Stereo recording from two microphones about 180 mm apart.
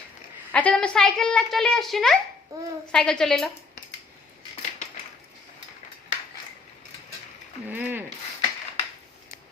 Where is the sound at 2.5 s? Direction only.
20° right (ahead or behind).